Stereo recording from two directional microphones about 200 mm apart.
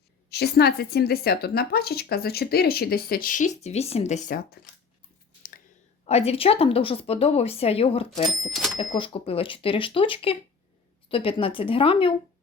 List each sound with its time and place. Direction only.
0.3 s speech: 55° left (ahead or behind)
5.4 s a sound: 45° left (ahead or behind)
6.1 s speech: 30° left (ahead or behind)